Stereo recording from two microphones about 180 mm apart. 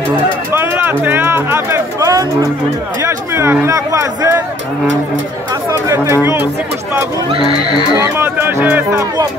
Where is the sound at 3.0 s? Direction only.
15° right (ahead or behind).